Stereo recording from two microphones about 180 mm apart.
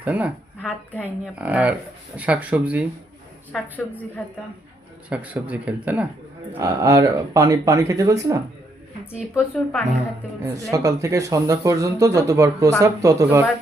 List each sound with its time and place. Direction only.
0.0 s speech: 10° right (ahead or behind)
1.4 s speech: 10° right (ahead or behind)
3.5 s a woman's voice: 10° left (ahead or behind)
5.0 s speech: 10° right (ahead or behind)
9.1 s speech: 5° right (ahead or behind)
10.4 s speech: 20° right (ahead or behind)